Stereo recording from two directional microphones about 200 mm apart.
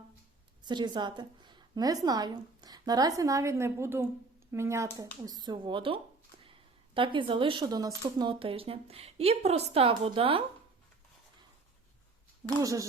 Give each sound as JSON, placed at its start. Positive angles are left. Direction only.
{"t": 0.6, "sound": "a woman's voice", "side_deg": -20}